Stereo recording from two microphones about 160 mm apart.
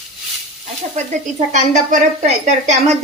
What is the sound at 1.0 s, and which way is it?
A woman's voice, 45° right (ahead or behind).